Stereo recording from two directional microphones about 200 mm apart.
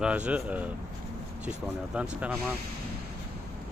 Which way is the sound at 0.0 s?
5° right (ahead or behind).